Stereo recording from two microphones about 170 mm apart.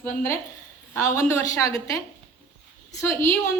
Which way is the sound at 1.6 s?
20° left (ahead or behind).